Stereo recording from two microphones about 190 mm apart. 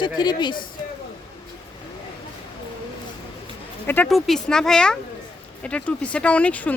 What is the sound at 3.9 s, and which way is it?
Speech, 5° left (ahead or behind).